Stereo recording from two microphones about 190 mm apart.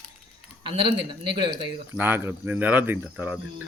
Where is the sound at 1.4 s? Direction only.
25° right (ahead or behind).